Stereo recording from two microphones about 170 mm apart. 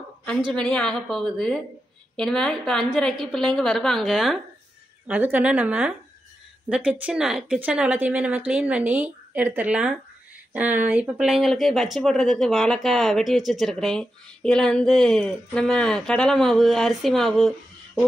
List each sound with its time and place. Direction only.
0.5 s speech: 5° left (ahead or behind)